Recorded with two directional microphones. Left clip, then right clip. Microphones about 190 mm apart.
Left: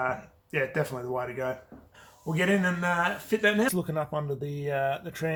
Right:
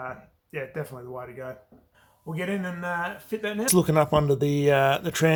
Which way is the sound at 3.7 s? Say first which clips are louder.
Right 10 dB; 40° right (ahead or behind).